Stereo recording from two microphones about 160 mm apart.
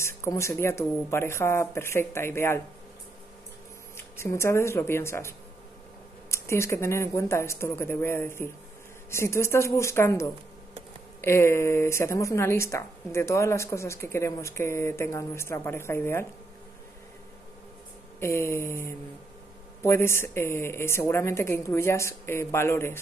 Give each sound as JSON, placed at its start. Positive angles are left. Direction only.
{"t": 0.0, "sound": "speech", "side_deg": 15}
{"t": 3.9, "sound": "speech", "side_deg": 15}
{"t": 6.3, "sound": "speech", "side_deg": 15}
{"t": 18.2, "sound": "speech", "side_deg": 15}